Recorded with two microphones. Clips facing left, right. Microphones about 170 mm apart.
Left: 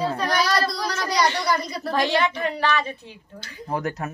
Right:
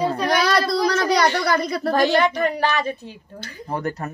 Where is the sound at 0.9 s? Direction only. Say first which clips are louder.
Right 4 dB; 60° right (ahead or behind).